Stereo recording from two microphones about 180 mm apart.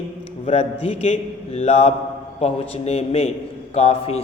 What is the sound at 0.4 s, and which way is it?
A man's voice, 35° left (ahead or behind).